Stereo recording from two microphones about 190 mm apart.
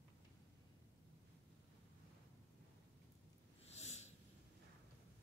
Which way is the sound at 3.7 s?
35° left (ahead or behind).